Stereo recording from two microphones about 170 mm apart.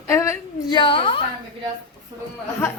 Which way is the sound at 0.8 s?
30° left (ahead or behind).